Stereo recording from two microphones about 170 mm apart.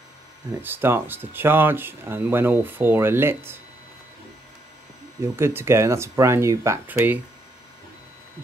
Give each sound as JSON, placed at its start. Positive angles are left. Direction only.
{"t": 0.5, "sound": "speech", "side_deg": -10}
{"t": 5.3, "sound": "speech", "side_deg": -15}